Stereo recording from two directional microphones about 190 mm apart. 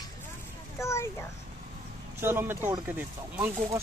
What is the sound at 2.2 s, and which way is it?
Speech, 10° right (ahead or behind).